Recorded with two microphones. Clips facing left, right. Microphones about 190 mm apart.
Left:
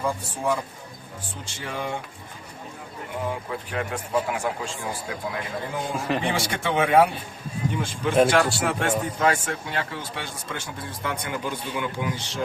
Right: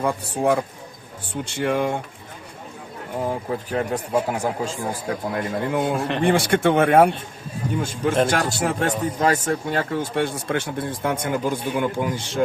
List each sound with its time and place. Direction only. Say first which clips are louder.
0.0 s speech: right 5 dB; 60° right (ahead or behind)
3.2 s speech: right 5 dB; 35° right (ahead or behind)
5.3 s speech: right 9 dB; 55° right (ahead or behind)
5.9 s speech: right 3 dB; centre (ahead or behind)
6.2 s speech: right 8 dB; 55° right (ahead or behind)
7.8 s speech: even; 45° right (ahead or behind)